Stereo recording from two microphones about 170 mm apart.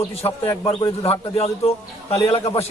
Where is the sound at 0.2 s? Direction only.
35° left (ahead or behind).